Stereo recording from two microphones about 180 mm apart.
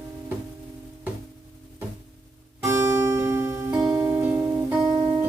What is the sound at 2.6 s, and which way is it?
Music, 15° right (ahead or behind).